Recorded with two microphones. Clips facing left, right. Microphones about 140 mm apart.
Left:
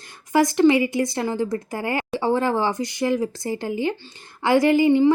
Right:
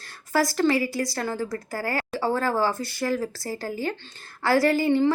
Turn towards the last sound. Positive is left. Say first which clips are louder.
# left 5 dB
turn(degrees=15)  # may be behind; listen again after turning